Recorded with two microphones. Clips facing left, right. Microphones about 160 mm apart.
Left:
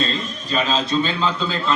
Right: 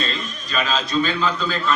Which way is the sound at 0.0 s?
30° left (ahead or behind).